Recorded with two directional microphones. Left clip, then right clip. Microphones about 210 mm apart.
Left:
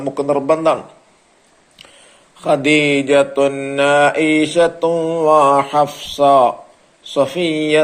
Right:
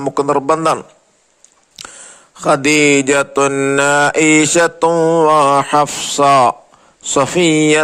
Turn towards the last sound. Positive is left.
turn(degrees=-50)  # may be behind; listen again after turning